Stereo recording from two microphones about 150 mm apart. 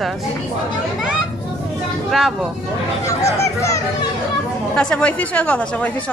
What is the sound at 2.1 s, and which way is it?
Speech, centre (ahead or behind).